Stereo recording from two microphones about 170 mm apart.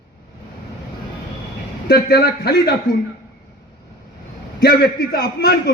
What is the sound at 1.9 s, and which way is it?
Speech, 70° left (ahead or behind).